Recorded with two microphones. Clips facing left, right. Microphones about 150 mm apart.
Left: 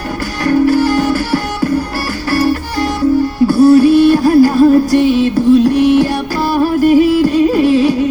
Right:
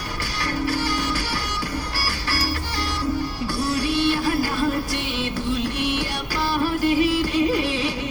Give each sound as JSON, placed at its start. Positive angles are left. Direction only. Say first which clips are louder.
{"t": 0.4, "sound": "music", "louder": "left 14 dB", "side_deg": 45}